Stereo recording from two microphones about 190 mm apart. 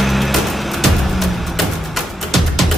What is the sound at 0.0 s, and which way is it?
Music, centre (ahead or behind).